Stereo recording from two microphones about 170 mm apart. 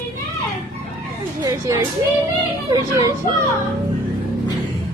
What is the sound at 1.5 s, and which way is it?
A woman's voice, 15° right (ahead or behind).